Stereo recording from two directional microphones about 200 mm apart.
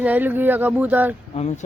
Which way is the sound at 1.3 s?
35° left (ahead or behind).